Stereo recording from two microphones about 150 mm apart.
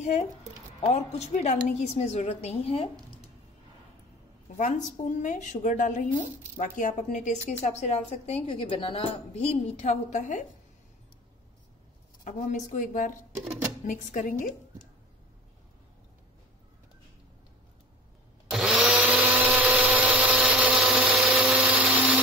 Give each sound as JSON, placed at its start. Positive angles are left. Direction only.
{"t": 0.7, "sound": "a woman's voice", "side_deg": 45}
{"t": 4.6, "sound": "a woman's voice", "side_deg": 55}
{"t": 12.3, "sound": "a woman's voice", "side_deg": 55}
{"t": 18.5, "sound": "blender", "side_deg": -5}